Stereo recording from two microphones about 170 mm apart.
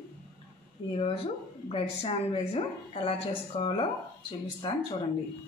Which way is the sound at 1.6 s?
35° left (ahead or behind).